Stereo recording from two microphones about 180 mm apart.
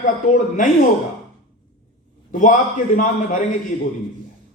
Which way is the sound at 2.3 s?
45° left (ahead or behind).